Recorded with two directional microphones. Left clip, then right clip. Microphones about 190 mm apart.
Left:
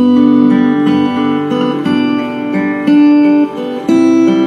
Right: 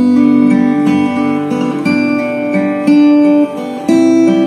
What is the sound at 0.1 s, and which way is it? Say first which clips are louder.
Music: left 1 dB; 20° right (ahead or behind).